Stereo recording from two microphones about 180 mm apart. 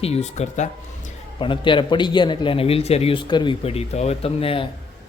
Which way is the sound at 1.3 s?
25° left (ahead or behind).